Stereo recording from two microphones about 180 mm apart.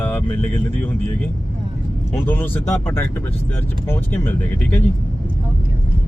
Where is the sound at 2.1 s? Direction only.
10° left (ahead or behind).